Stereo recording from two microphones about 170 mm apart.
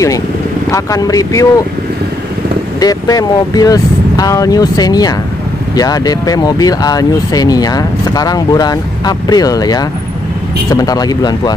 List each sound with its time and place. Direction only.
0.7 s speech: 20° left (ahead or behind)
2.8 s speech: 20° left (ahead or behind)